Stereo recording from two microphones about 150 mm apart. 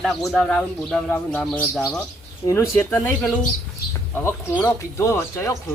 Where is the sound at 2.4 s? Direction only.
20° left (ahead or behind).